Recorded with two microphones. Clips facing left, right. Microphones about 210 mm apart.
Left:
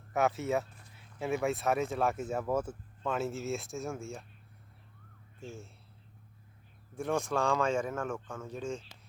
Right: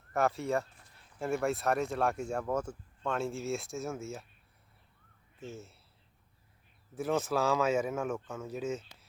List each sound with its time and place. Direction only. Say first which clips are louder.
0.1 s speech: even; centre (ahead or behind)
5.4 s speech: right 1 dB; centre (ahead or behind)
6.9 s speech: right 1 dB; 5° right (ahead or behind)